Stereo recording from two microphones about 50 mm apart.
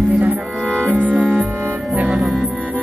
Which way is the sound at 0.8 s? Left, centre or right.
Left.